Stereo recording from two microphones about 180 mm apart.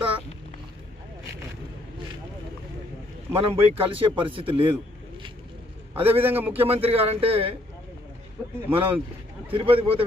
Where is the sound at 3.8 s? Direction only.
30° right (ahead or behind).